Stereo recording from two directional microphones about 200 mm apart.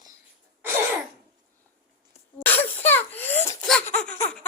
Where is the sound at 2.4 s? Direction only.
10° left (ahead or behind).